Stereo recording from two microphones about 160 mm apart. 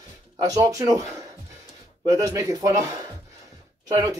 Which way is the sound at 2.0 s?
20° right (ahead or behind).